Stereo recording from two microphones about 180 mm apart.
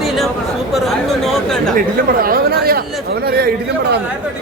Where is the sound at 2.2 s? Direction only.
55° right (ahead or behind).